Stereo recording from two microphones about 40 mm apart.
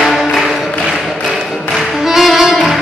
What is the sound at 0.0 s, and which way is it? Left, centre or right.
Music, centre.